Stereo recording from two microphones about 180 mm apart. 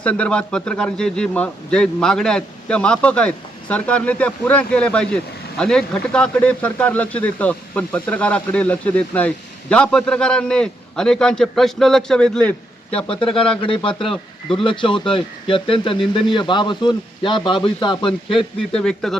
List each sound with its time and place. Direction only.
0.0 s a man's voice: 5° left (ahead or behind)
13.6 s speech: 30° left (ahead or behind)
14.0 s speech: centre (ahead or behind)
14.6 s speech: 30° left (ahead or behind)
18.7 s a man's voice: 5° left (ahead or behind)